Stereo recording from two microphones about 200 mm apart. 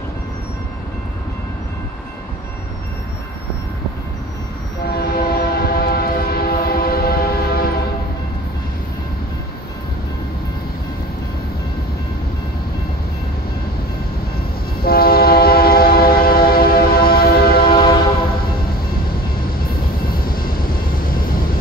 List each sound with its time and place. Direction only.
4.9 s train: 50° left (ahead or behind)
14.8 s train: 50° left (ahead or behind)
20.1 s vehicle: 45° left (ahead or behind)